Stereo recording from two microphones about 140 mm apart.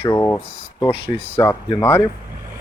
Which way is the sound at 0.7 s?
40° left (ahead or behind).